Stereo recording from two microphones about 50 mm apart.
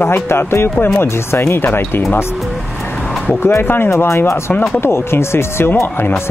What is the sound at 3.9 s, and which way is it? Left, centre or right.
Speech, left.